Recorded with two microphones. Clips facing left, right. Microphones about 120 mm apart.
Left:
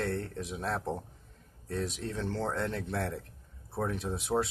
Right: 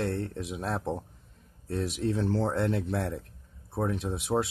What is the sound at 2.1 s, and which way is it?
Speech, 30° right (ahead or behind).